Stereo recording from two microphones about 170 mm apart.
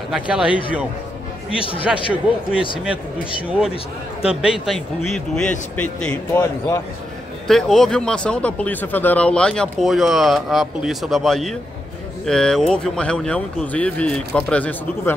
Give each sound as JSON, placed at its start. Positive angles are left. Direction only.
{"t": 0.1, "sound": "speech", "side_deg": -5}
{"t": 1.5, "sound": "speech", "side_deg": 30}
{"t": 3.4, "sound": "speech", "side_deg": -5}
{"t": 3.7, "sound": "speech", "side_deg": 35}
{"t": 4.4, "sound": "speech", "side_deg": 0}
{"t": 7.4, "sound": "speech", "side_deg": 0}